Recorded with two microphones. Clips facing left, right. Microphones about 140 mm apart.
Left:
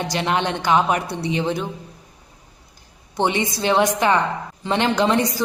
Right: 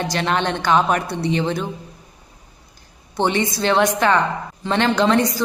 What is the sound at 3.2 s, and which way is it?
A woman's voice, 15° left (ahead or behind).